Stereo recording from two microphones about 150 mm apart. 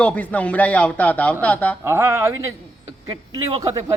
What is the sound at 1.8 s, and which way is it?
Speech, 15° right (ahead or behind).